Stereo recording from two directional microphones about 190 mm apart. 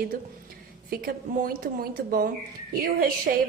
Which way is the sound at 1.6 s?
50° right (ahead or behind).